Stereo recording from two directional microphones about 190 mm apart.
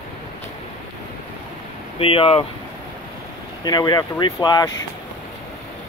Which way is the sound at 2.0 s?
30° left (ahead or behind).